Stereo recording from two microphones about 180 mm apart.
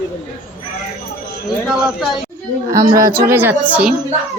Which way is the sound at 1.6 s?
Centre (ahead or behind).